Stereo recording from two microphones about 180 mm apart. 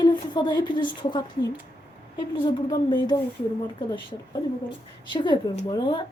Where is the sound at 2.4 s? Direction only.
25° left (ahead or behind).